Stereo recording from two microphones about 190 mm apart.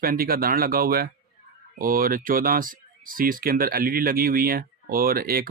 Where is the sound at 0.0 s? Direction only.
50° right (ahead or behind).